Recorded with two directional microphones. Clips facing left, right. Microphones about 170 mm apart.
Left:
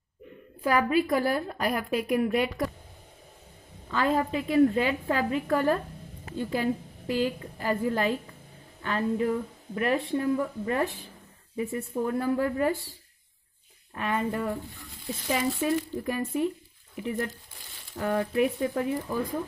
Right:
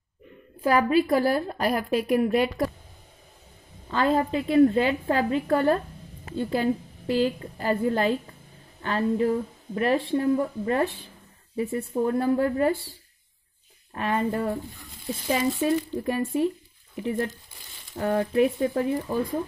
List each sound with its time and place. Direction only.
0.7 s speech: 30° right (ahead or behind)
3.9 s a woman's voice: 30° right (ahead or behind)
13.9 s speech: 30° right (ahead or behind)
15.6 s a woman's voice: 30° right (ahead or behind)